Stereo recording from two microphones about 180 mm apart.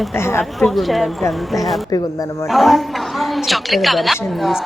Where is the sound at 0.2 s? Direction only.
15° left (ahead or behind).